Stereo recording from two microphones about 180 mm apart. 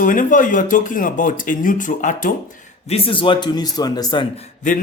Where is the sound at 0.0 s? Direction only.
50° left (ahead or behind).